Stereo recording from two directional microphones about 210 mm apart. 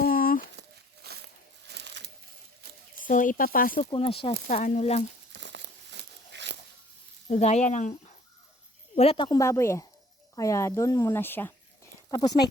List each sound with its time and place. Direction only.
0.0 s a sound: 45° left (ahead or behind)
1.0 s a sound: 50° right (ahead or behind)
3.0 s speech: 40° left (ahead or behind)
3.8 s speech: 25° left (ahead or behind)
5.3 s crumpling: 55° right (ahead or behind)
7.3 s speech: 30° left (ahead or behind)